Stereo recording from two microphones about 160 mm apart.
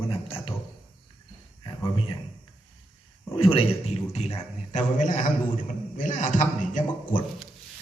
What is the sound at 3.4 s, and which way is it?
A man's voice, 35° left (ahead or behind).